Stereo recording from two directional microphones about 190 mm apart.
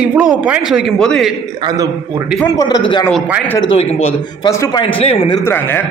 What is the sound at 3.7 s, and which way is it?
Speech, 30° left (ahead or behind).